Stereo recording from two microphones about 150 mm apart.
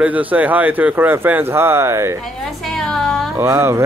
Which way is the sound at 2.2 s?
Centre (ahead or behind).